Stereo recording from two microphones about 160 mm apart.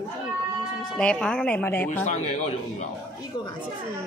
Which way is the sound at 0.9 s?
5° left (ahead or behind).